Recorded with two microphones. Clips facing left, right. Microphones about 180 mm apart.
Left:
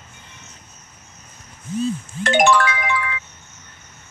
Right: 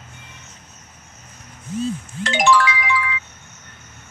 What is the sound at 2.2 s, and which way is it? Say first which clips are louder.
Music: left 1 dB; 55° left (ahead or behind).